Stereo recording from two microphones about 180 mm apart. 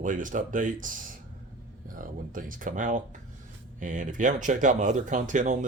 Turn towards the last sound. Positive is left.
turn(degrees=-45)  # may be behind; listen again after turning